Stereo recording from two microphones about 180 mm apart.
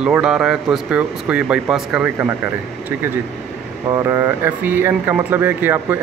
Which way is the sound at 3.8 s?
15° right (ahead or behind).